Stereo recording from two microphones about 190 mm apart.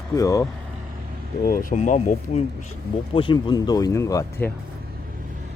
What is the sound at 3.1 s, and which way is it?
A man's voice, 25° left (ahead or behind).